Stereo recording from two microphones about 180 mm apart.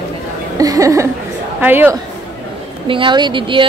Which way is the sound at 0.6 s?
20° right (ahead or behind).